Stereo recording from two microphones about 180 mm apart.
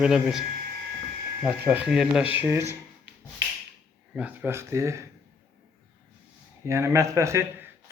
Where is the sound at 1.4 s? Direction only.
10° right (ahead or behind).